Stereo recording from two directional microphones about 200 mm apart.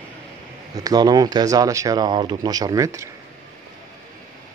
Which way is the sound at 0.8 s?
20° right (ahead or behind).